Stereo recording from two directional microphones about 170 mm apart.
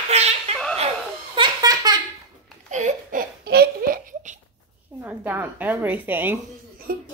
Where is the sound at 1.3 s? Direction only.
25° right (ahead or behind).